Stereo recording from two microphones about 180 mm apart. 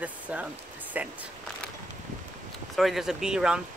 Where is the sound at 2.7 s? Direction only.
Centre (ahead or behind).